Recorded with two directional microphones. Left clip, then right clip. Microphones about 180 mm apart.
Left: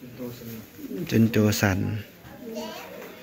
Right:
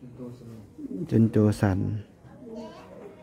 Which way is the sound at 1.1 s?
30° right (ahead or behind).